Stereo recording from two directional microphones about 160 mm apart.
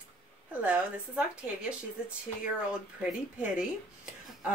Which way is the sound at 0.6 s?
10° right (ahead or behind).